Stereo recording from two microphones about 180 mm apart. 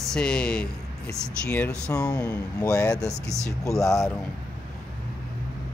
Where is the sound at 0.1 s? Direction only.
5° left (ahead or behind).